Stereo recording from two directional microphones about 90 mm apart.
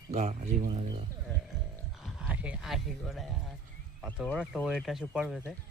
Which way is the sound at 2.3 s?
15° right (ahead or behind).